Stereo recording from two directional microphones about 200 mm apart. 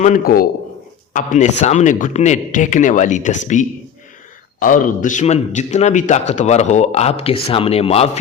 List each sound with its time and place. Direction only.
0.0 s a man's voice: 45° left (ahead or behind)